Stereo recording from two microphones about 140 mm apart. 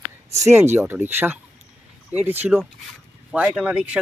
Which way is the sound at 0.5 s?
15° right (ahead or behind).